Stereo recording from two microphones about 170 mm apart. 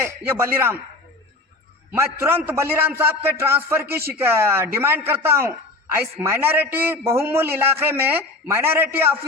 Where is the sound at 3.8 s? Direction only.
65° right (ahead or behind).